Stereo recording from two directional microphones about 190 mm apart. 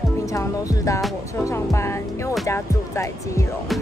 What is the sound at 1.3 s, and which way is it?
Speech, 15° left (ahead or behind).